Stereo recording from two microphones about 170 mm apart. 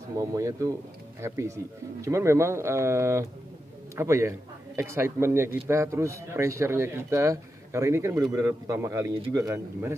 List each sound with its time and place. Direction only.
0.2 s a man's voice: 20° right (ahead or behind)